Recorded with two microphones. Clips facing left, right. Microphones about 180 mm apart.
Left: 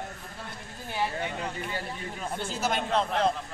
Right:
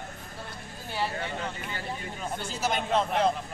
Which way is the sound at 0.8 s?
15° left (ahead or behind).